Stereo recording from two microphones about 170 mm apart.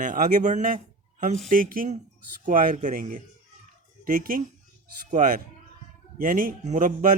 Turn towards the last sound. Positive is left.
turn(degrees=-50)  # may be behind; listen again after turning